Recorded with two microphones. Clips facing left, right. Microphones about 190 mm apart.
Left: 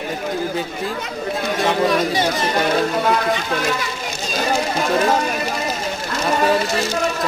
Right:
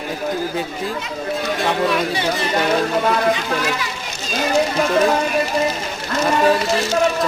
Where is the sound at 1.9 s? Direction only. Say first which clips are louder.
Left 2 dB; 40° left (ahead or behind).